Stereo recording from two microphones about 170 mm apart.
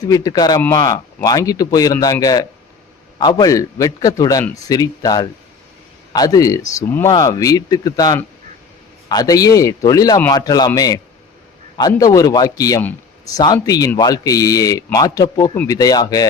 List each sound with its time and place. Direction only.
0.1 s speech: 20° left (ahead or behind)